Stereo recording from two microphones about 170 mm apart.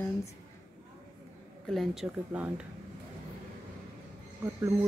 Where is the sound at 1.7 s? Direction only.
Centre (ahead or behind).